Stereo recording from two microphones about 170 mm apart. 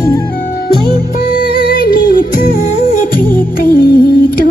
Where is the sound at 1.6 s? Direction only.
55° left (ahead or behind).